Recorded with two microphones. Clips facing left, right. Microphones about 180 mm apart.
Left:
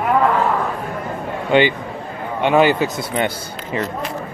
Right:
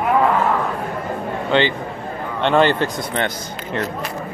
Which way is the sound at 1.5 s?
15° left (ahead or behind).